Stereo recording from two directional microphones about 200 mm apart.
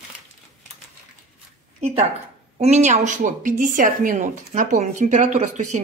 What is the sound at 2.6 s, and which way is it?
A woman's voice, 35° right (ahead or behind).